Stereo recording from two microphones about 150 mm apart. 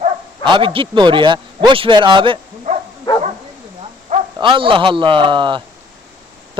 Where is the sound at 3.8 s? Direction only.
50° right (ahead or behind).